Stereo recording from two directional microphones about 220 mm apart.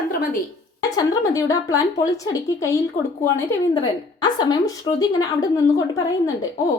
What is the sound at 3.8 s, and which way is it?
A woman's voice, 20° left (ahead or behind).